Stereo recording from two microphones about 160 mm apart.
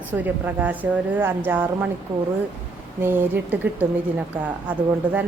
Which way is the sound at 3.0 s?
15° right (ahead or behind).